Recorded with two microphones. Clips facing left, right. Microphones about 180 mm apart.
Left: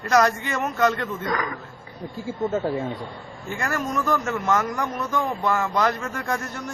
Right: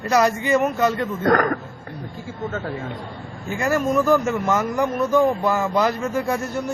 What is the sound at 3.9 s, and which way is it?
A man's voice, 10° right (ahead or behind).